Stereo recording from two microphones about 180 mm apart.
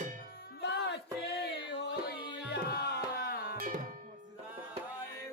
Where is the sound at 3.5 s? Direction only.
50° right (ahead or behind).